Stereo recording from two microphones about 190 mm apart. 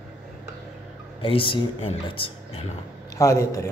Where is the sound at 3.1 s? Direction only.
15° left (ahead or behind).